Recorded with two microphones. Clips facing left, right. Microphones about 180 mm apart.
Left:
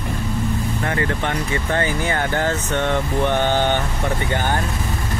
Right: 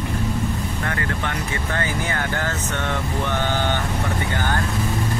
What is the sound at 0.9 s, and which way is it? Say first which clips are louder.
Speech: left 5 dB; 20° left (ahead or behind).